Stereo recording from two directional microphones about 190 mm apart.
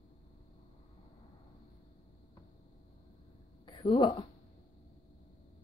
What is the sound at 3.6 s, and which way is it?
Speech, 25° left (ahead or behind).